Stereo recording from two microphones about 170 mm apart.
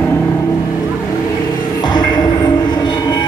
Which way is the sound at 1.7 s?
25° left (ahead or behind).